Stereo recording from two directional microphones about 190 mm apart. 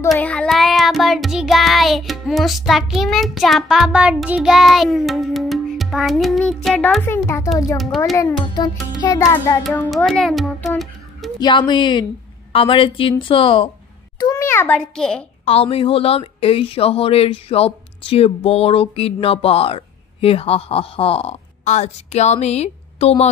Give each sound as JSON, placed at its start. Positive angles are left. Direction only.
{"t": 0.1, "sound": "child singing", "side_deg": 5}
{"t": 8.2, "sound": "a woman's voice", "side_deg": 20}
{"t": 9.0, "sound": "music", "side_deg": 20}
{"t": 10.0, "sound": "speech", "side_deg": 0}
{"t": 11.3, "sound": "a woman's voice", "side_deg": 25}
{"t": 14.2, "sound": "a child's voice", "side_deg": 15}
{"t": 15.4, "sound": "a woman's voice", "side_deg": 30}